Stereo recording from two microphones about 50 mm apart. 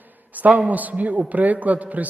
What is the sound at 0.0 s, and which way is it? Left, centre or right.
A man's voice, right.